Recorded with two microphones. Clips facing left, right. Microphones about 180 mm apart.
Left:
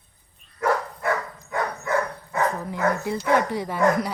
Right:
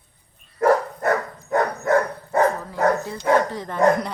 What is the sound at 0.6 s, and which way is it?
Dog, 45° right (ahead or behind).